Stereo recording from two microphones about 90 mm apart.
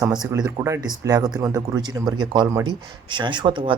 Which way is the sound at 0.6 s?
30° right (ahead or behind).